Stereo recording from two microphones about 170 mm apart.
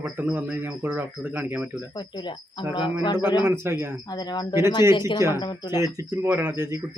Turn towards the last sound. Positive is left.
turn(degrees=-15)  # may be behind; listen again after turning